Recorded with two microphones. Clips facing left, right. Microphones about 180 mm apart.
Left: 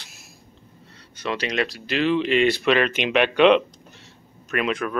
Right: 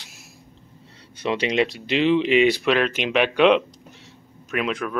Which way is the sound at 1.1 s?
25° right (ahead or behind).